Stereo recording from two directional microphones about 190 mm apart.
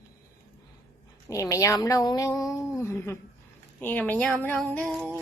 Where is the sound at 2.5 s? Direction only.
15° left (ahead or behind).